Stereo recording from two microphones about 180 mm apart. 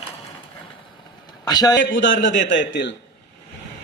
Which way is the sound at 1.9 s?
90° left.